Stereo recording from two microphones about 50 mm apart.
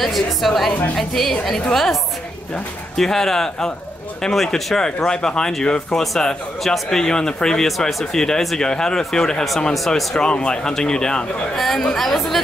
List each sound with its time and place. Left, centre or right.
0.0 s a woman's voice: centre
3.0 s speech: centre
9.6 s speech: centre
11.5 s a woman's voice: centre